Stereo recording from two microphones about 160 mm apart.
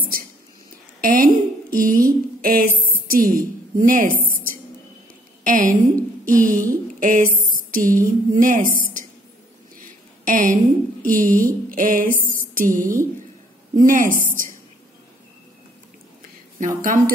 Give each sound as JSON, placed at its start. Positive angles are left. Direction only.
{"t": 1.0, "sound": "a woman's voice", "side_deg": -60}
{"t": 10.2, "sound": "speech", "side_deg": -55}
{"t": 16.5, "sound": "speech", "side_deg": -55}